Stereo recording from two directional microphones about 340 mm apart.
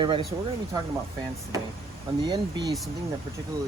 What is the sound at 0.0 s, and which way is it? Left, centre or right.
Speech, centre.